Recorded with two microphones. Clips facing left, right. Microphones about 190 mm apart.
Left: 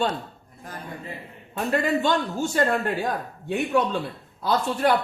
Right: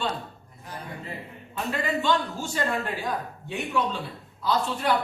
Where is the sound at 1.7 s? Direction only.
50° left (ahead or behind).